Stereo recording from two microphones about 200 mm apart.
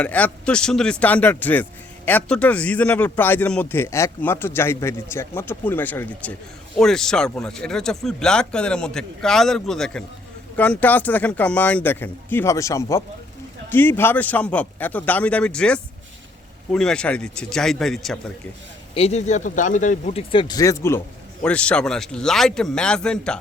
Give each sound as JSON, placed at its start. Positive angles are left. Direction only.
{"t": 0.0, "sound": "a man's voice", "side_deg": 5}
{"t": 18.9, "sound": "speech", "side_deg": 30}
{"t": 20.3, "sound": "a man's voice", "side_deg": 25}